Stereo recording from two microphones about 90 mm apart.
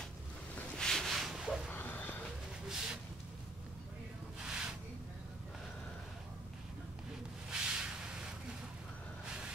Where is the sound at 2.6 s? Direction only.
5° right (ahead or behind).